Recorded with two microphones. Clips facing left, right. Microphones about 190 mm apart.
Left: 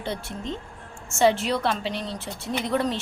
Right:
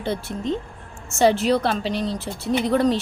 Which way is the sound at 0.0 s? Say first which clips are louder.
Right 5 dB; 40° right (ahead or behind).